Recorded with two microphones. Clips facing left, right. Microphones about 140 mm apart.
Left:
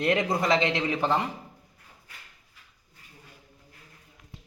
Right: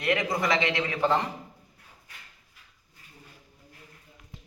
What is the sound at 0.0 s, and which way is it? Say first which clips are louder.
A man's voice: left 2 dB; 25° left (ahead or behind).